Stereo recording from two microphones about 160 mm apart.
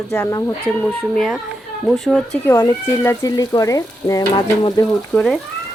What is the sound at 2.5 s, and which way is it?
Speech, 15° left (ahead or behind).